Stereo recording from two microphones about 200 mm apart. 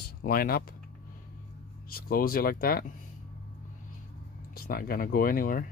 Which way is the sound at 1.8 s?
50° left (ahead or behind).